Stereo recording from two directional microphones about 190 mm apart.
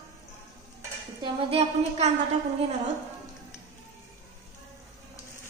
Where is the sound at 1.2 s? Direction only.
30° right (ahead or behind).